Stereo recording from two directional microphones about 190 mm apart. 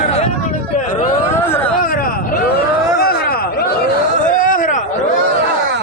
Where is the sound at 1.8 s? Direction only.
50° left (ahead or behind).